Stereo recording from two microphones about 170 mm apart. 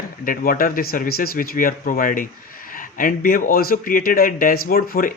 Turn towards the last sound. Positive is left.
turn(degrees=55)  # may be behind; listen again after turning